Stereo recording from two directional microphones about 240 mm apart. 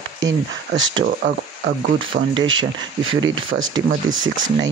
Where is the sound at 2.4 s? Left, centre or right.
Right.